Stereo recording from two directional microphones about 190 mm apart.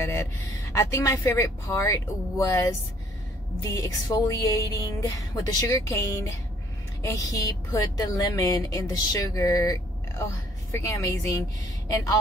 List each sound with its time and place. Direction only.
0.0 s speech: 15° left (ahead or behind)
3.7 s a woman's voice: 15° left (ahead or behind)